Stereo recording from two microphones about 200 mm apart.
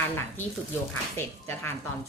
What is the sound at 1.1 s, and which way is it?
Speech, 10° left (ahead or behind).